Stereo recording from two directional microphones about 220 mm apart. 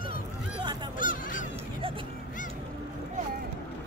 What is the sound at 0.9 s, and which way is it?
Goose, 40° left (ahead or behind).